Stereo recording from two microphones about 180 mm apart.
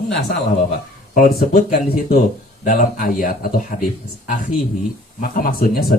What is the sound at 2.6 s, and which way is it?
Speech, 50° left (ahead or behind).